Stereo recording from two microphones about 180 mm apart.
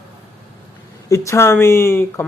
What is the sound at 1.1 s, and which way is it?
Speech, 15° left (ahead or behind).